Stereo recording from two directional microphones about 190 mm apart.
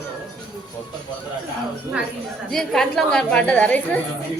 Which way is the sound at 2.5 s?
Centre (ahead or behind).